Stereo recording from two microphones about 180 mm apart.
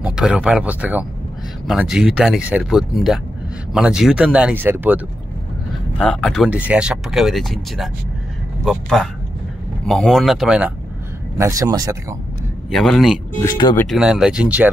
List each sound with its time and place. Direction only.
0.0 s speech: 5° right (ahead or behind)
5.9 s speech: 5° left (ahead or behind)
11.3 s speech: 15° right (ahead or behind)
12.7 s speech: centre (ahead or behind)
13.4 s speech: 25° left (ahead or behind)
13.8 s speech: 5° right (ahead or behind)